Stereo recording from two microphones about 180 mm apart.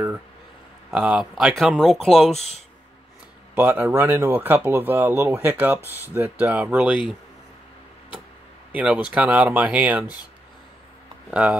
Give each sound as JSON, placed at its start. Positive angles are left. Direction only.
{"t": 0.8, "sound": "a man's voice", "side_deg": -5}
{"t": 2.3, "sound": "speech", "side_deg": 35}
{"t": 3.5, "sound": "speech", "side_deg": -10}
{"t": 8.7, "sound": "speech", "side_deg": -5}
{"t": 11.2, "sound": "a man's voice", "side_deg": -5}